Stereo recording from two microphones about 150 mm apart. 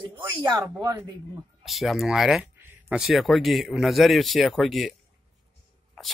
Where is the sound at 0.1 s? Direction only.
30° right (ahead or behind).